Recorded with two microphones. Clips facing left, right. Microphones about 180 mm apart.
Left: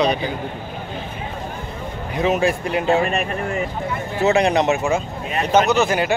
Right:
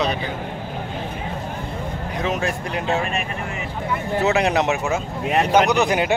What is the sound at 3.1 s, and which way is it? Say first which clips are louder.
Speech: left 4 dB; 45° left (ahead or behind).